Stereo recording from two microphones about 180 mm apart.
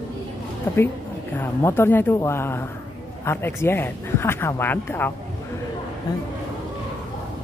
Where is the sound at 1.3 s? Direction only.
15° left (ahead or behind).